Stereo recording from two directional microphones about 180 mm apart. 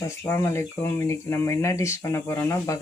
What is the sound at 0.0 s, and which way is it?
Speech, 15° left (ahead or behind).